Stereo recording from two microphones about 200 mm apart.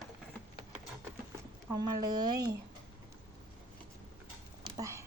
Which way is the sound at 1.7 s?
20° right (ahead or behind).